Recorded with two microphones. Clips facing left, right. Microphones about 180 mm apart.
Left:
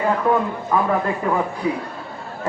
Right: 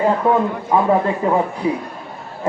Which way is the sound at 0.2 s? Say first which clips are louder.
Right 3 dB; 25° right (ahead or behind).